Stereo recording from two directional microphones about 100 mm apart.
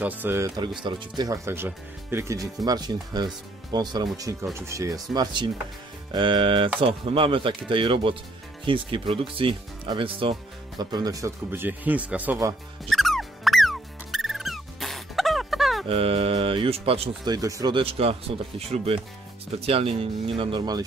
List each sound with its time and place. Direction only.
0.0 s speech: 20° right (ahead or behind)
0.8 s speech: 50° right (ahead or behind)
1.3 s speech: 25° right (ahead or behind); by 10.3 s 60° right (ahead or behind)
10.8 s speech: 40° right (ahead or behind); by 12.4 s 15° right (ahead or behind)
12.9 s music: centre (ahead or behind)
15.9 s speech: 70° right (ahead or behind)
17.2 s speech: 40° right (ahead or behind)
17.7 s speech: 75° right (ahead or behind)
18.7 s speech: 90° right
19.5 s speech: 80° right